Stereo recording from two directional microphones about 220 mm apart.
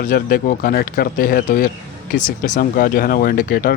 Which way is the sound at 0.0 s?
40° left (ahead or behind).